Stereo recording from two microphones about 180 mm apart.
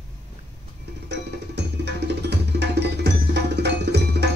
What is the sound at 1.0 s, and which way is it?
Music, 70° right (ahead or behind).